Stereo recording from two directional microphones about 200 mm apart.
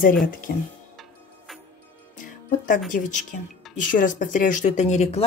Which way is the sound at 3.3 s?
45° left (ahead or behind).